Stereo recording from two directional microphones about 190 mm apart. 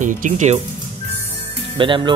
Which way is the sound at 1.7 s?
25° right (ahead or behind).